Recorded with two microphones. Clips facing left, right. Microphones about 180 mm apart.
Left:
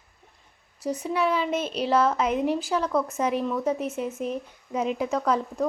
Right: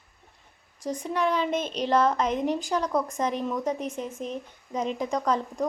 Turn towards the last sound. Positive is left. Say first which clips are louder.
# left 1 dB
turn(degrees=5)  # may be behind; listen again after turning